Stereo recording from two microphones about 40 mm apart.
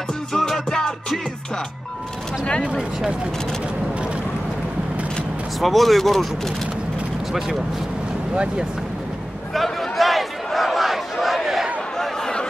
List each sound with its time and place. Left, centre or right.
0.3 s music: centre
0.7 s music: centre
5.6 s speech: centre
9.5 s a sound: centre